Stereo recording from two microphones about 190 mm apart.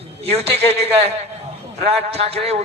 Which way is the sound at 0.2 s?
30° right (ahead or behind).